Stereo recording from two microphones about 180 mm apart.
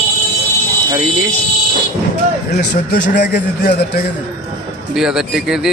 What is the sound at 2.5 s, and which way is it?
A man's voice, 65° left (ahead or behind).